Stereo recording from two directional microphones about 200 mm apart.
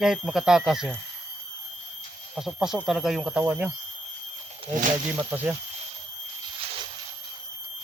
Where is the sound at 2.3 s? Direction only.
Centre (ahead or behind).